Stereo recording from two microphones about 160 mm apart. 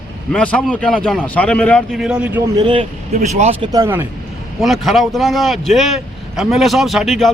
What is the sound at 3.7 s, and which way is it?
Speech, 15° right (ahead or behind).